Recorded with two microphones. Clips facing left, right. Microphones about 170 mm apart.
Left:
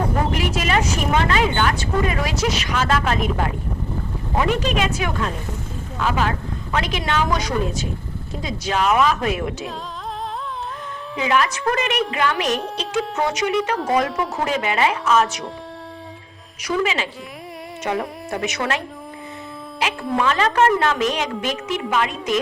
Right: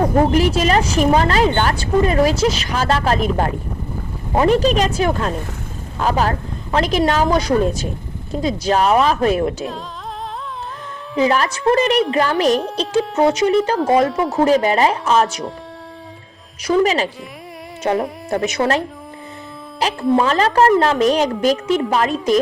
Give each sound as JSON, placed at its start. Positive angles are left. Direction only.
{"t": 0.1, "sound": "a woman's voice", "side_deg": -35}
{"t": 11.2, "sound": "a woman's voice", "side_deg": -35}
{"t": 16.6, "sound": "a woman's voice", "side_deg": -40}
{"t": 20.1, "sound": "a woman's voice", "side_deg": -35}